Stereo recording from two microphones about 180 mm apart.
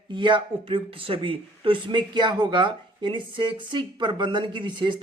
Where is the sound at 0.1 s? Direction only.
25° right (ahead or behind).